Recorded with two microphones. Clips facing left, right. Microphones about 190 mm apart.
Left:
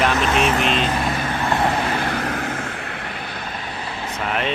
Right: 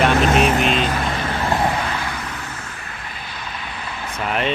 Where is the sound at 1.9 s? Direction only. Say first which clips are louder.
Left 5 dB; 60° left (ahead or behind); by 3.9 s 40° left (ahead or behind).